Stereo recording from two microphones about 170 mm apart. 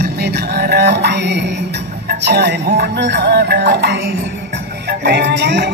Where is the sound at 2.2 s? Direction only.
70° right (ahead or behind).